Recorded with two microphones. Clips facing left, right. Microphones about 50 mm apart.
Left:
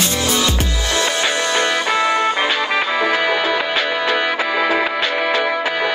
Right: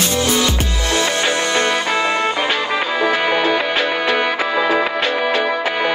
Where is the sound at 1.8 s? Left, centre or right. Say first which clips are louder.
Left 1 dB; left.